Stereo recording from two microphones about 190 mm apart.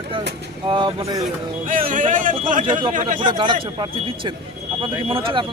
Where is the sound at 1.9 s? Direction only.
45° right (ahead or behind).